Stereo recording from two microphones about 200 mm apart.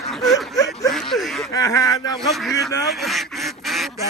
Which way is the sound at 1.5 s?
15° left (ahead or behind).